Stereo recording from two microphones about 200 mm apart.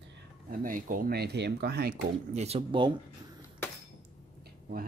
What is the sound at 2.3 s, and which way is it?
Speech, 30° right (ahead or behind).